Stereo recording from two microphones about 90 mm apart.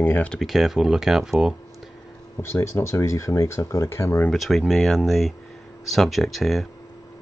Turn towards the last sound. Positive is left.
turn(degrees=0)  # may be behind; listen again after turning